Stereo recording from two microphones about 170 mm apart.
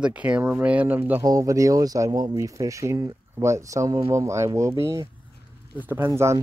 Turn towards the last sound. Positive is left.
turn(degrees=-15)  # may be behind; listen again after turning